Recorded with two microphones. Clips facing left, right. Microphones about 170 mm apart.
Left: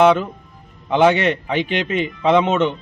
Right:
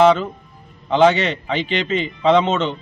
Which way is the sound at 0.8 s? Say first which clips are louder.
Even; 10° left (ahead or behind).